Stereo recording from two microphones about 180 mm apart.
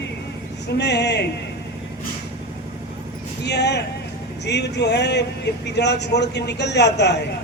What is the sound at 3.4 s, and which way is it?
A man's voice, 70° left (ahead or behind).